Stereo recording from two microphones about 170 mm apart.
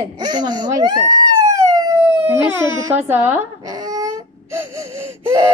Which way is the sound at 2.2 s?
10° right (ahead or behind).